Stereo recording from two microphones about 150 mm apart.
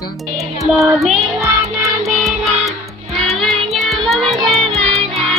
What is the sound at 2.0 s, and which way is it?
Music, centre (ahead or behind).